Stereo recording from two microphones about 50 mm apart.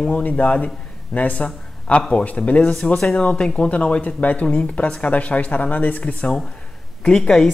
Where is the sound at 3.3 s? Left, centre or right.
Centre.